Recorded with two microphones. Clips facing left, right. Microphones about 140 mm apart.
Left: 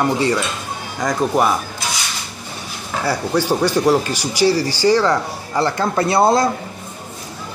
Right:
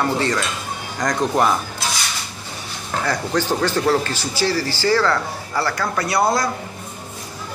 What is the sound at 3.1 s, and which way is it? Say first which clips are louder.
Speech: left 3 dB; 10° left (ahead or behind).